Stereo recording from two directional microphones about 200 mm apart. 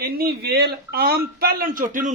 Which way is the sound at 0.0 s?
50° right (ahead or behind).